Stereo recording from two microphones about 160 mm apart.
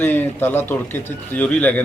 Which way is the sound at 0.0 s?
10° left (ahead or behind).